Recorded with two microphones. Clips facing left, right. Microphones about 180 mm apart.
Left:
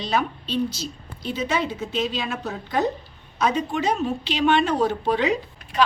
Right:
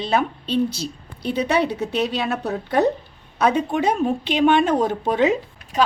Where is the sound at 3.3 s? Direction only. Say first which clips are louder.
Right 4 dB; 60° right (ahead or behind).